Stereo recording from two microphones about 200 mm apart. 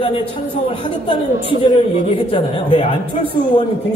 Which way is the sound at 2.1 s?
25° left (ahead or behind).